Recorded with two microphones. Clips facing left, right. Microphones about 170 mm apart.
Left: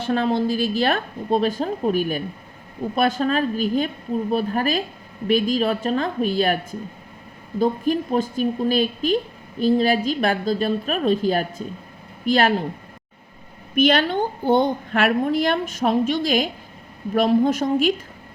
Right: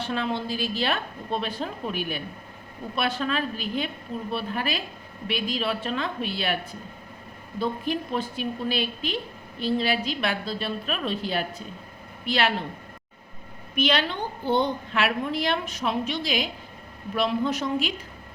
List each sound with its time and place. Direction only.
0.0 s a woman's voice: 45° left (ahead or behind)
13.7 s a woman's voice: 50° left (ahead or behind)